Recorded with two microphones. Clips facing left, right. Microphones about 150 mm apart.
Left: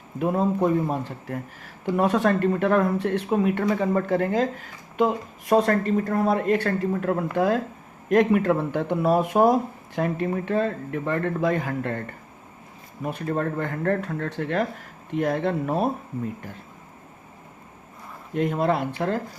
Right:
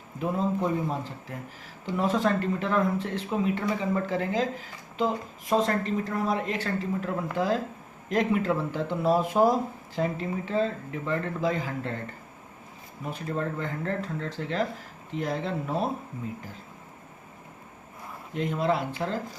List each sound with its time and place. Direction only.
0.2 s speech: 55° left (ahead or behind)
18.3 s speech: 55° left (ahead or behind)